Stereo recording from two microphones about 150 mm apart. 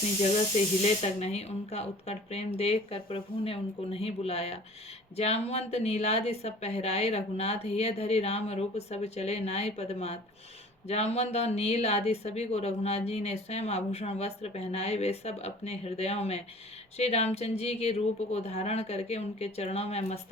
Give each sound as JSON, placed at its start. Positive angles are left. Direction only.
{"t": 1.0, "sound": "a woman's voice", "side_deg": 45}